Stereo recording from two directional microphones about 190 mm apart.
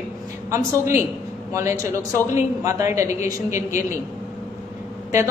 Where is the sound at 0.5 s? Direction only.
15° right (ahead or behind).